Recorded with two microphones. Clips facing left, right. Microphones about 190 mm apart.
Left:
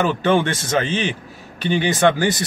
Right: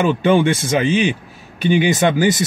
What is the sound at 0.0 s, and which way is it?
Speech, 15° right (ahead or behind).